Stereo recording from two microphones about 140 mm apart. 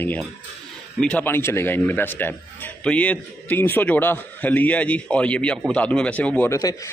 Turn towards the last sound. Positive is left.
turn(degrees=25)  # may be behind; listen again after turning